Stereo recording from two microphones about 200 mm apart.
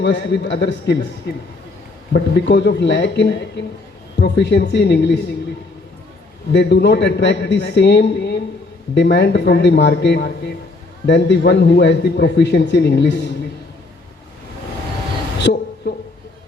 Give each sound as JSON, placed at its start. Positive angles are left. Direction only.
{"t": 0.0, "sound": "a man's voice", "side_deg": 60}
{"t": 2.1, "sound": "a man's voice", "side_deg": 60}
{"t": 6.5, "sound": "a man's voice", "side_deg": 60}